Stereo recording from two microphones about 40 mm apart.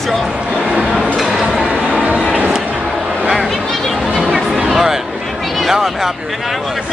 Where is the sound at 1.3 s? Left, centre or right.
Centre.